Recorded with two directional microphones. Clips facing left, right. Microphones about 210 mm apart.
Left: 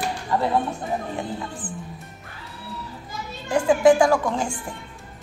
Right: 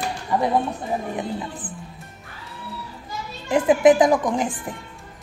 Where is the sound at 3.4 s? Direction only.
20° right (ahead or behind).